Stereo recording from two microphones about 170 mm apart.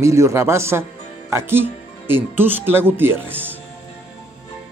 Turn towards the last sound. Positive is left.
turn(degrees=-10)  # may be behind; listen again after turning